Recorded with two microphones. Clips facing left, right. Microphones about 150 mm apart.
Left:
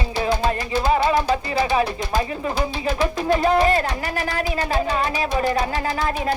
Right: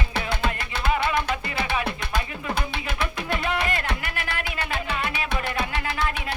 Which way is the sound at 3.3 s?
35° left (ahead or behind).